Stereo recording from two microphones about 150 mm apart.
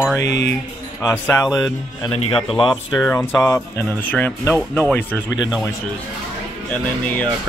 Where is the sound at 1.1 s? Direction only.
20° left (ahead or behind).